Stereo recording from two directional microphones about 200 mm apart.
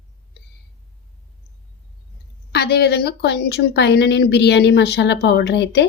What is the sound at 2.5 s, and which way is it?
A woman's voice, 55° left (ahead or behind).